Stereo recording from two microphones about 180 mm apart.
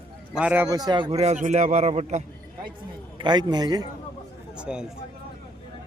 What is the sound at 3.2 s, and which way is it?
Speech, 25° right (ahead or behind).